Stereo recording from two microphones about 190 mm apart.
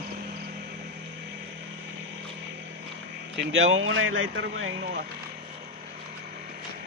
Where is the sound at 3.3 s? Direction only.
75° right (ahead or behind).